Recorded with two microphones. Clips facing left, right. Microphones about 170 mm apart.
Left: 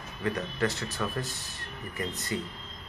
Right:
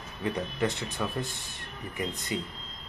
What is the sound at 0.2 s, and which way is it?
Speech, 20° right (ahead or behind).